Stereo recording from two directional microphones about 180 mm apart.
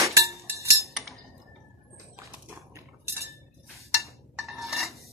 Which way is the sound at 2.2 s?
15° right (ahead or behind).